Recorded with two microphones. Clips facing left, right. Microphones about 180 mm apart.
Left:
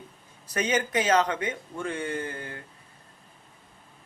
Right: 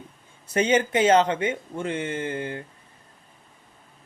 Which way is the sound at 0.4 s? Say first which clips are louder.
Right 6 dB; 25° right (ahead or behind).